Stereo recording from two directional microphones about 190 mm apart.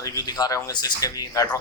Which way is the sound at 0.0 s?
20° left (ahead or behind).